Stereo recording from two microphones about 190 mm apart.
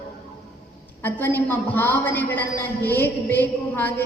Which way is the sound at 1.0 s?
10° left (ahead or behind).